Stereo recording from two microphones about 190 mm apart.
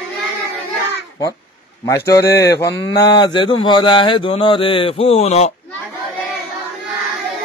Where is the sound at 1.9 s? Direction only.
15° left (ahead or behind).